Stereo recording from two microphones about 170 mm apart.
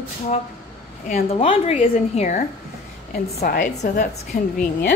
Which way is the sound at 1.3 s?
35° left (ahead or behind).